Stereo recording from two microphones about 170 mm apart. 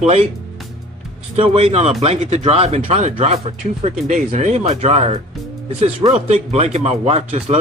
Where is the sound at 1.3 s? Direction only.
35° right (ahead or behind).